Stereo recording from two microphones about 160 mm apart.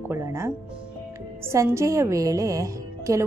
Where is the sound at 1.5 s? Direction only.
20° right (ahead or behind).